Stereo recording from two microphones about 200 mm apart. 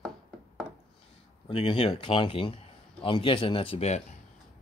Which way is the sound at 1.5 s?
30° left (ahead or behind).